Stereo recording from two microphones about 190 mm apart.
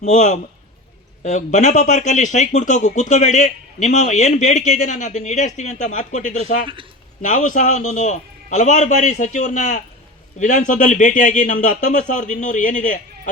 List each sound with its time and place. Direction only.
0.0 s speech: 40° left (ahead or behind)